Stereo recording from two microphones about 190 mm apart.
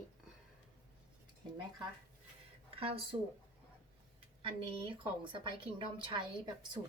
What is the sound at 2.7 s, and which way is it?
Speech, 30° right (ahead or behind).